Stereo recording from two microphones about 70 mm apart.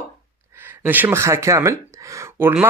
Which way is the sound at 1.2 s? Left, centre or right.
Right.